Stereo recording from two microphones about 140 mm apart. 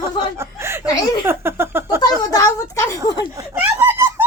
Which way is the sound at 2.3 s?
25° left (ahead or behind).